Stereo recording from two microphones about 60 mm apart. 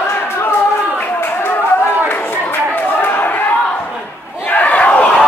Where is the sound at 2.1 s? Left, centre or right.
Left.